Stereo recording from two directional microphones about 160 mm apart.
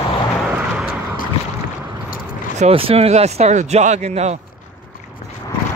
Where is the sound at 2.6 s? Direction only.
35° right (ahead or behind).